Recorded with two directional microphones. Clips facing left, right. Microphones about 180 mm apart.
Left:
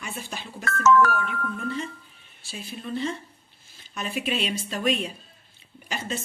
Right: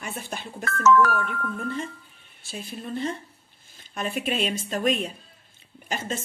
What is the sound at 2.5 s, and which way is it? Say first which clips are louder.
A woman's voice: even; 50° right (ahead or behind).